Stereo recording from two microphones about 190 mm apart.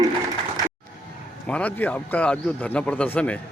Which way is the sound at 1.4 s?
10° left (ahead or behind).